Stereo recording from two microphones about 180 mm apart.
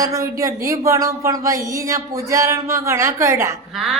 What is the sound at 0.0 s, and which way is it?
Speech, 20° right (ahead or behind).